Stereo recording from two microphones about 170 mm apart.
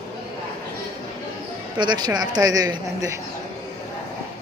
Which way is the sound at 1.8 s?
25° right (ahead or behind).